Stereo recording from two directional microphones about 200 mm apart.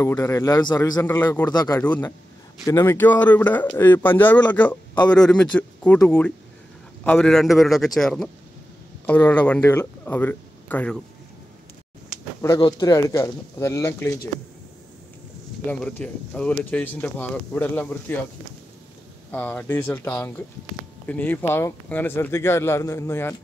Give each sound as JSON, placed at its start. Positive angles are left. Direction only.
{"t": 0.0, "sound": "speech", "side_deg": 15}
{"t": 1.0, "sound": "speech", "side_deg": 10}
{"t": 1.8, "sound": "a man's voice", "side_deg": 10}
{"t": 12.4, "sound": "speech", "side_deg": 20}
{"t": 15.6, "sound": "speech", "side_deg": 5}
{"t": 19.3, "sound": "speech", "side_deg": 5}